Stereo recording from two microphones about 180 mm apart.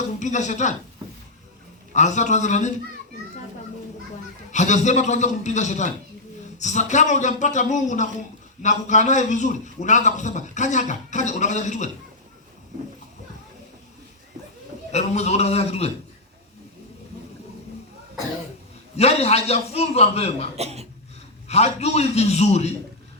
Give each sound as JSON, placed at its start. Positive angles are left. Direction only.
{"t": 0.2, "sound": "speech", "side_deg": 40}
{"t": 1.9, "sound": "a man's voice", "side_deg": 40}
{"t": 4.5, "sound": "a man's voice", "side_deg": 40}
{"t": 14.9, "sound": "a man's voice", "side_deg": 40}
{"t": 18.9, "sound": "a man's voice", "side_deg": 35}
{"t": 20.6, "sound": "speech", "side_deg": -35}
{"t": 21.4, "sound": "a man's voice", "side_deg": 35}